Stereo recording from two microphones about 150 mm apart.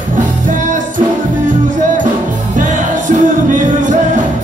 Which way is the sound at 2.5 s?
60° right (ahead or behind).